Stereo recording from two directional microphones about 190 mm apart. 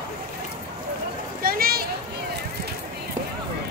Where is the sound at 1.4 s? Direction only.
50° right (ahead or behind).